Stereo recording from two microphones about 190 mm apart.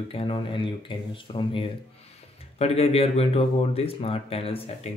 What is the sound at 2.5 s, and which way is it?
Speech, 30° left (ahead or behind).